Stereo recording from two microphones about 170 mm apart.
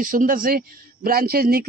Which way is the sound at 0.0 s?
55° right (ahead or behind).